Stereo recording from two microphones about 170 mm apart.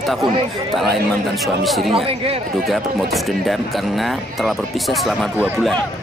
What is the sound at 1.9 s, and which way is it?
Speech, 35° right (ahead or behind).